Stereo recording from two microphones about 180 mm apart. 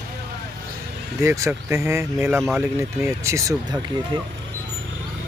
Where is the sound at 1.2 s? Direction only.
15° right (ahead or behind).